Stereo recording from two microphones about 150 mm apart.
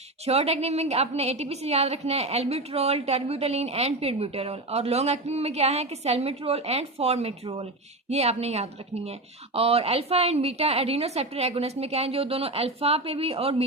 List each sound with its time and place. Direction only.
0.3 s a woman's voice: 45° right (ahead or behind)